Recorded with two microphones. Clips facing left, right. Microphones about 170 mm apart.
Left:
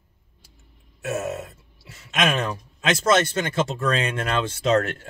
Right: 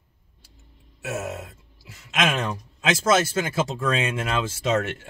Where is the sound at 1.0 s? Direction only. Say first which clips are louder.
Left 3 dB; centre (ahead or behind).